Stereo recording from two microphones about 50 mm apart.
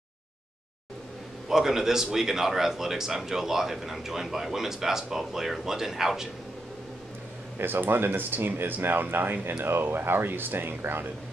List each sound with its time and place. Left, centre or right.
1.5 s a man's voice: centre
7.5 s speech: right